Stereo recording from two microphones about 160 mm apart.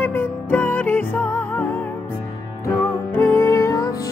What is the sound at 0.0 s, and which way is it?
Music, 10° left (ahead or behind).